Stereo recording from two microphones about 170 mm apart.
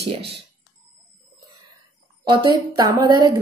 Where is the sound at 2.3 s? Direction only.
25° right (ahead or behind).